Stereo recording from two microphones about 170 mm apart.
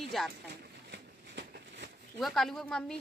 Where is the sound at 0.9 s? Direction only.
85° right.